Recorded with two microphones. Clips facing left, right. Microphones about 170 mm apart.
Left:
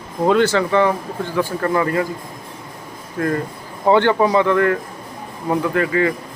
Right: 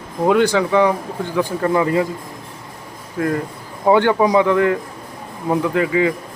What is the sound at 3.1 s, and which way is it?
Speech, 5° right (ahead or behind).